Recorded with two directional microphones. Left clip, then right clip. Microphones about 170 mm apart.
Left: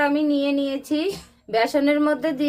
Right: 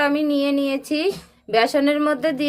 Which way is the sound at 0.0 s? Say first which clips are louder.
Right 1 dB; 15° right (ahead or behind).